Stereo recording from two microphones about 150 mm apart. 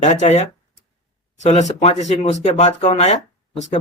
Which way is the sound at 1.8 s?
45° left (ahead or behind).